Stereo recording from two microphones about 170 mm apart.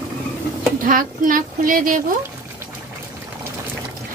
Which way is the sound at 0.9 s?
55° right (ahead or behind).